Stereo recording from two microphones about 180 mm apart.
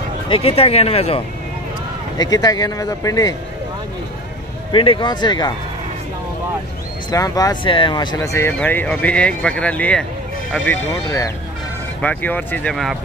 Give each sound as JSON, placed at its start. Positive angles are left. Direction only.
{"t": 0.3, "sound": "speech", "side_deg": 30}
{"t": 2.1, "sound": "speech", "side_deg": 20}
{"t": 4.7, "sound": "speech", "side_deg": 25}
{"t": 7.1, "sound": "speech", "side_deg": 20}